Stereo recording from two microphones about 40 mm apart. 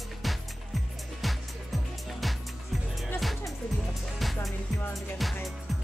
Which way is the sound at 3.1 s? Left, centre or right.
Centre.